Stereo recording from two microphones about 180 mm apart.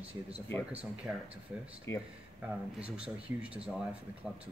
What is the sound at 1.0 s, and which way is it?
Speech, 5° right (ahead or behind).